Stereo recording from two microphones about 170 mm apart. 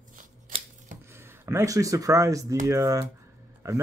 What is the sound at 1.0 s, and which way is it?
Speech, 15° right (ahead or behind).